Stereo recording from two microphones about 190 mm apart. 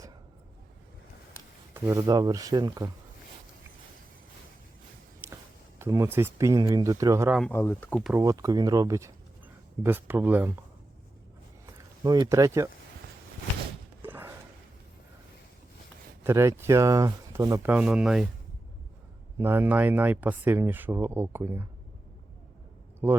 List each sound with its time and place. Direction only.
1.7 s speech: 15° right (ahead or behind)
5.8 s speech: 15° right (ahead or behind)
7.5 s speech: 10° left (ahead or behind)
8.1 s speech: 15° right (ahead or behind)
11.6 s speech: 20° right (ahead or behind)
14.0 s a sound: 10° right (ahead or behind)
16.2 s speech: 15° right (ahead or behind)
19.4 s speech: 10° right (ahead or behind)